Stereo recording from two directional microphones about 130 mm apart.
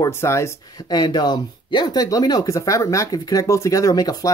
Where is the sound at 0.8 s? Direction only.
35° left (ahead or behind).